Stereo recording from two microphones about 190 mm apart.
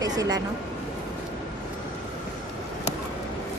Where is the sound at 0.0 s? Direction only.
20° right (ahead or behind).